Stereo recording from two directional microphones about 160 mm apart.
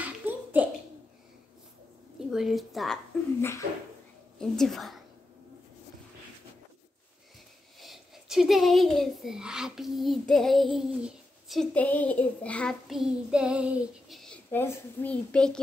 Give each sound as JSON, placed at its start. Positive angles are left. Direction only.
{"t": 0.0, "sound": "a sound", "side_deg": -10}
{"t": 2.1, "sound": "a woman's voice", "side_deg": -5}
{"t": 3.3, "sound": "speech", "side_deg": 15}
{"t": 4.4, "sound": "speech", "side_deg": 0}
{"t": 7.8, "sound": "speech", "side_deg": 0}